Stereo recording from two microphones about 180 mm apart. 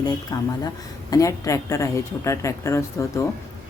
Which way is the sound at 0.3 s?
20° left (ahead or behind).